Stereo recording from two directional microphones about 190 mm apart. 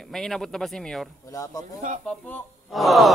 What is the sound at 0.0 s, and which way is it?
Speech, centre (ahead or behind).